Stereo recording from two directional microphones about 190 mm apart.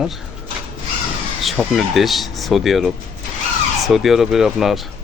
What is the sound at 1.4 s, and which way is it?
Speech, centre (ahead or behind).